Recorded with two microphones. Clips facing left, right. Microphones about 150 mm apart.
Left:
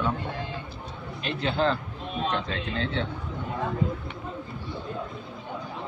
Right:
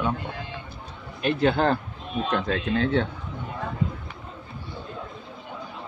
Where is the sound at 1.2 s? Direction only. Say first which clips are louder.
Right 5 dB; 50° right (ahead or behind).